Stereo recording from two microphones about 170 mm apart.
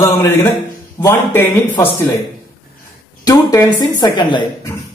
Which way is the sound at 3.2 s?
20° left (ahead or behind).